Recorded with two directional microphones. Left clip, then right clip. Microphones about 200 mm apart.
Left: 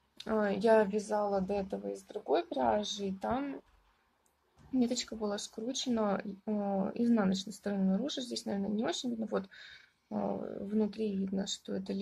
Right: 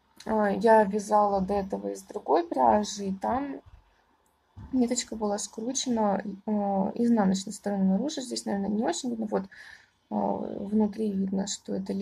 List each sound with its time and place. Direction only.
0.2 s a woman's voice: 5° left (ahead or behind)
4.7 s a woman's voice: 5° left (ahead or behind)